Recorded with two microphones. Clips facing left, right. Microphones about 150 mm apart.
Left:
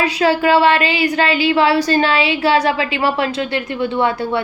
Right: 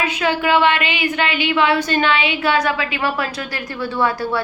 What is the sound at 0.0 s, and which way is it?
Speech, 35° left (ahead or behind).